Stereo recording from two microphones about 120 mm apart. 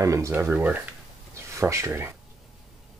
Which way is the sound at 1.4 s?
25° right (ahead or behind).